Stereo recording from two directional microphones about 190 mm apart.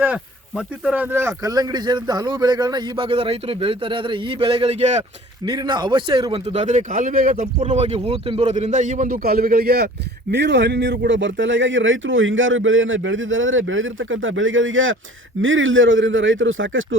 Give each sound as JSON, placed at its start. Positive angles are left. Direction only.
{"t": 0.0, "sound": "speech", "side_deg": -5}
{"t": 5.5, "sound": "speech", "side_deg": -25}
{"t": 6.5, "sound": "speech", "side_deg": -35}